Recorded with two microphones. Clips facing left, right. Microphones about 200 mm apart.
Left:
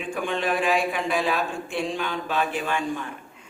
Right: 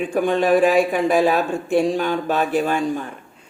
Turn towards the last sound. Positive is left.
turn(degrees=-40)  # may be behind; listen again after turning